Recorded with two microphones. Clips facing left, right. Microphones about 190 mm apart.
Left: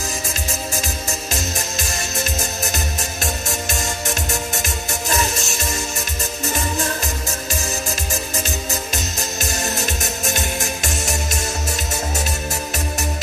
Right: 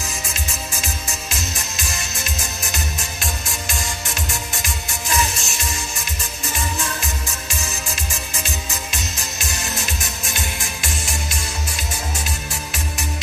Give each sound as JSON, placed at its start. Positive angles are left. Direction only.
{"t": 2.3, "sound": "music", "side_deg": 40}